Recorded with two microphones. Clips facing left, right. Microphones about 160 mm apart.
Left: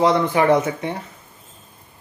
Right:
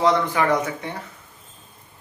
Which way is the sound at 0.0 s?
20° left (ahead or behind).